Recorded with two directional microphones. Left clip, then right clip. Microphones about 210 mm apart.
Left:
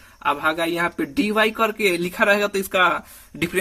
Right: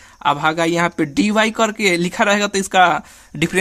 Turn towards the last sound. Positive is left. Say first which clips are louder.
# right 5 dB
turn(degrees=-35)  # may be behind; listen again after turning